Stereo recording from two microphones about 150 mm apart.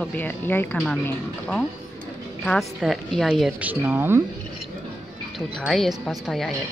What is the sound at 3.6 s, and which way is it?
Speech, 15° right (ahead or behind).